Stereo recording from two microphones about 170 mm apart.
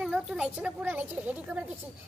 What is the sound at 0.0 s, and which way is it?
A child's voice, centre (ahead or behind).